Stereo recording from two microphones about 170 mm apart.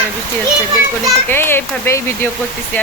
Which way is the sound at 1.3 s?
15° left (ahead or behind).